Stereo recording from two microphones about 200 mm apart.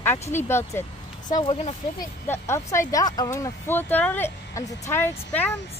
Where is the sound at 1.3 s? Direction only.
25° left (ahead or behind).